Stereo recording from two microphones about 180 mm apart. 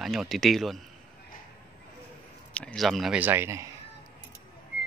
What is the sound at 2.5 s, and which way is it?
Speech, 5° left (ahead or behind).